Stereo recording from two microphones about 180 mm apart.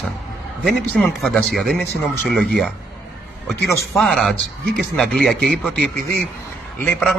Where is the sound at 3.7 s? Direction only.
15° left (ahead or behind).